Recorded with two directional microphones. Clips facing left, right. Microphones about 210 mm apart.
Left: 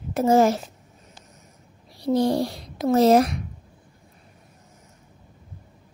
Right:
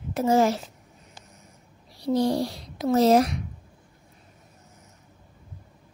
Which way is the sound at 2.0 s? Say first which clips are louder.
Left 2 dB; 55° left (ahead or behind).